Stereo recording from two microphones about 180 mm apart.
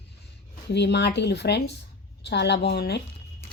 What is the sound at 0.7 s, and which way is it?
Speech, 70° left (ahead or behind).